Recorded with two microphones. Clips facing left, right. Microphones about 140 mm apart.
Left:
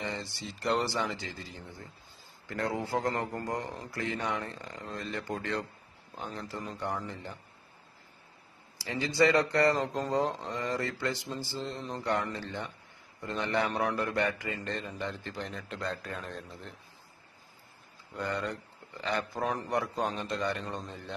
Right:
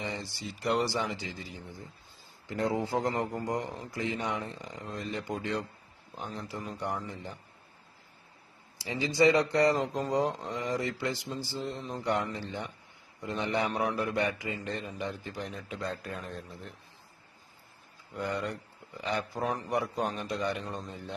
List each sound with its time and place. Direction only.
0.0 s a man's voice: 15° right (ahead or behind)
8.7 s a man's voice: 20° right (ahead or behind); by 16.7 s centre (ahead or behind)
18.1 s a man's voice: 10° right (ahead or behind)
19.4 s a man's voice: centre (ahead or behind)